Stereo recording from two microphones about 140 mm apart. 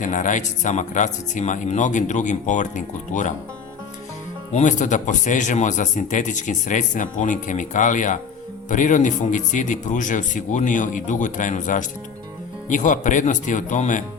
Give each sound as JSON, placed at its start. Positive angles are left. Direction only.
{"t": 0.0, "sound": "speech", "side_deg": 65}
{"t": 4.5, "sound": "speech", "side_deg": 60}